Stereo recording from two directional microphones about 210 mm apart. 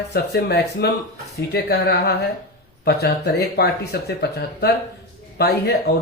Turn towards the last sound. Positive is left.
turn(degrees=50)  # may be behind; listen again after turning